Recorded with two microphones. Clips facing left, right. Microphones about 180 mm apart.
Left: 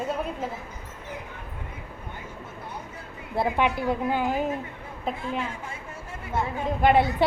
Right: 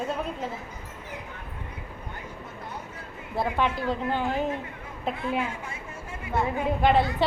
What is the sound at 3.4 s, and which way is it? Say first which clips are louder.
A woman's voice: left 2 dB; 15° left (ahead or behind).